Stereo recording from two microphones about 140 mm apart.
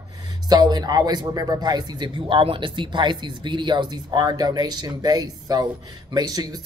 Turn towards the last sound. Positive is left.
turn(degrees=-30)  # may be behind; listen again after turning